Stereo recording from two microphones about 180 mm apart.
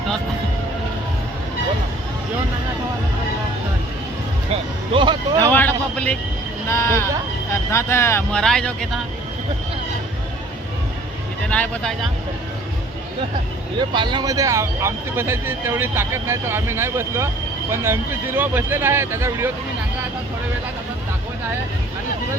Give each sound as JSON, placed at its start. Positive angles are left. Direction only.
{"t": 4.9, "sound": "speech", "side_deg": -25}
{"t": 5.5, "sound": "speech", "side_deg": 10}
{"t": 8.4, "sound": "speech", "side_deg": 5}
{"t": 11.4, "sound": "speech", "side_deg": 5}
{"t": 13.7, "sound": "speech", "side_deg": -25}